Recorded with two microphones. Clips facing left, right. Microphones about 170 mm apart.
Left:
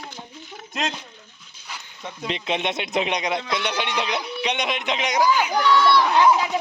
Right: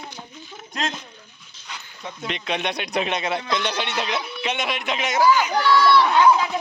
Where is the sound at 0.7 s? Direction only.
20° left (ahead or behind).